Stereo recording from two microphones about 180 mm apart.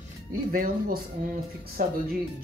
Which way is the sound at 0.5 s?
55° right (ahead or behind).